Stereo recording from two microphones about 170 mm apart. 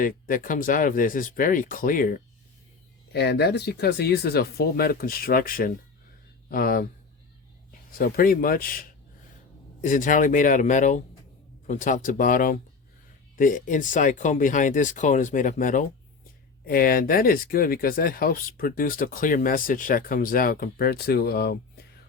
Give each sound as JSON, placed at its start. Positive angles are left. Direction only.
{"t": 0.0, "sound": "speech", "side_deg": 55}
{"t": 3.1, "sound": "a man's voice", "side_deg": 75}